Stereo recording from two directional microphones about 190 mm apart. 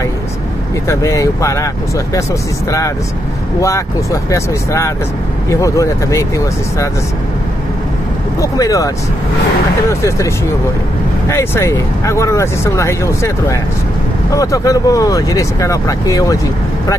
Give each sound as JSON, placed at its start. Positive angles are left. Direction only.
{"t": 0.8, "sound": "speech", "side_deg": 15}
{"t": 3.6, "sound": "speech", "side_deg": 15}
{"t": 8.4, "sound": "speech", "side_deg": 20}